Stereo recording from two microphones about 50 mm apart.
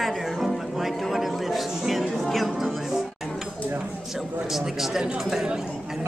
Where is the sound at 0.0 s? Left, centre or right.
Centre.